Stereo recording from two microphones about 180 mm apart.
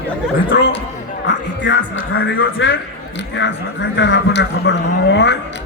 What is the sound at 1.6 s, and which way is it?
Speech, 90° left.